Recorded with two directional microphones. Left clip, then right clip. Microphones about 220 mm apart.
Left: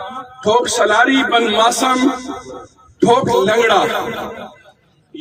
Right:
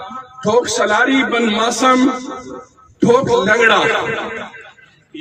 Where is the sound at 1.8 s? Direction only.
55° left (ahead or behind).